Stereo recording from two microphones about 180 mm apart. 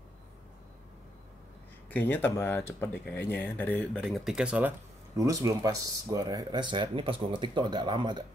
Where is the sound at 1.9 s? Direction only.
10° left (ahead or behind).